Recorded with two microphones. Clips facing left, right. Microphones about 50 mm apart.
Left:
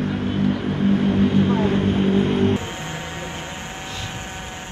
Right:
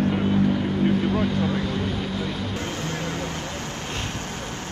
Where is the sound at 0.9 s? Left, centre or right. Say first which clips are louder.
Left 4 dB; left.